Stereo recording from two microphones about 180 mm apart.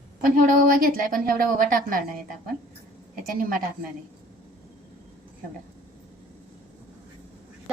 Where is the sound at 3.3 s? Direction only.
55° right (ahead or behind).